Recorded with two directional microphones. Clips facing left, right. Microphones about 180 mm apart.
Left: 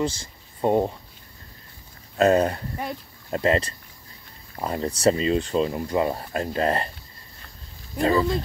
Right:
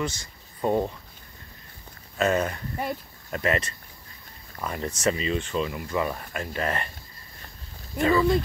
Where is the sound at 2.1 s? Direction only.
35° left (ahead or behind).